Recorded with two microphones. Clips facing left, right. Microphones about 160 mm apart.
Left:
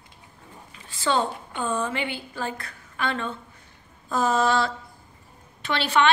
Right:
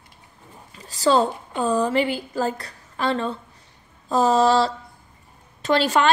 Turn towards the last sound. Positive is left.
turn(degrees=-40)  # may be behind; listen again after turning